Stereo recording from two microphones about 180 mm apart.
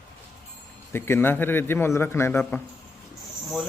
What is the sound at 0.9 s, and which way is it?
A man's voice, 15° left (ahead or behind).